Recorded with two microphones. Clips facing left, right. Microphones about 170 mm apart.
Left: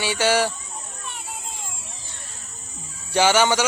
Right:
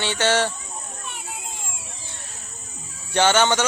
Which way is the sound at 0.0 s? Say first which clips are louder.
Left 1 dB; 10° left (ahead or behind).